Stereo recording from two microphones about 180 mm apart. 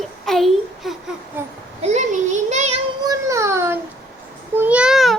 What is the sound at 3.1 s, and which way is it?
A child's voice, 15° right (ahead or behind).